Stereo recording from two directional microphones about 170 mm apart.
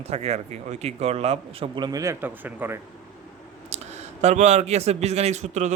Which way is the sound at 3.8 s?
40° right (ahead or behind).